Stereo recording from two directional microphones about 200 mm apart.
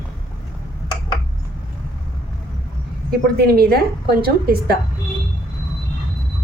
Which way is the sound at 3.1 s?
50° right (ahead or behind).